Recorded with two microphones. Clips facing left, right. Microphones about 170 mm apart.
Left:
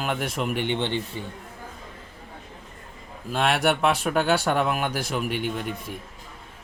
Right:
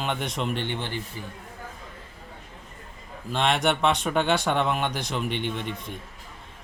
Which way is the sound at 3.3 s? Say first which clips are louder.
Left 1 dB; 5° left (ahead or behind).